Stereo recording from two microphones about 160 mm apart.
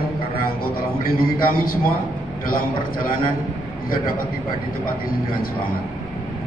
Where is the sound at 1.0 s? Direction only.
65° left (ahead or behind).